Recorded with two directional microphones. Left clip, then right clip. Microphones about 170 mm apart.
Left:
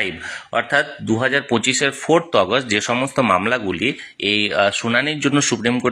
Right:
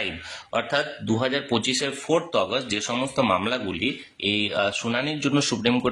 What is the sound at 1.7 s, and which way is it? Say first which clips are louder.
Speech: left 9 dB; 30° left (ahead or behind).